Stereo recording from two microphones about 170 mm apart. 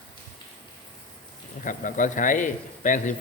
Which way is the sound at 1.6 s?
50° left (ahead or behind).